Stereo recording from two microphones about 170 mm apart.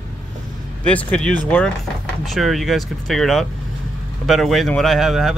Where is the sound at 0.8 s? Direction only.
10° left (ahead or behind).